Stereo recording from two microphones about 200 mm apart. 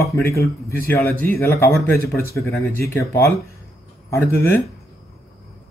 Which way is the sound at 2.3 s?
15° left (ahead or behind).